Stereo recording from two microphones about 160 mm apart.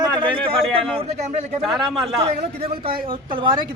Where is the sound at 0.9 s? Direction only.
40° right (ahead or behind).